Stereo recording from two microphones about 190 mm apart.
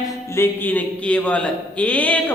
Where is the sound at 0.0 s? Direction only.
15° left (ahead or behind).